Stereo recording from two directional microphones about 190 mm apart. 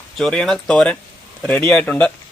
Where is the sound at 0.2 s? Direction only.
Centre (ahead or behind).